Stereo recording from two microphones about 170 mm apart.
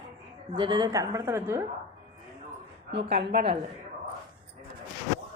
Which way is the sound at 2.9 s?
80° right.